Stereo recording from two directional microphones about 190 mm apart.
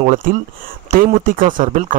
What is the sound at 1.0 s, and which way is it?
Speech, 45° right (ahead or behind).